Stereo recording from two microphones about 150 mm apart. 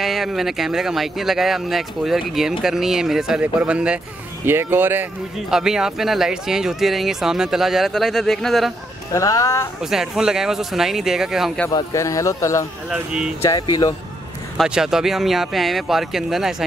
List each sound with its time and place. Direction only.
0.0 s speech: centre (ahead or behind)
9.1 s speech: 20° left (ahead or behind)
9.8 s speech: 5° right (ahead or behind)
11.7 s speech: 20° left (ahead or behind)
12.9 s speech: 5° right (ahead or behind)
13.4 s speech: 25° left (ahead or behind)
14.6 s speech: 5° right (ahead or behind)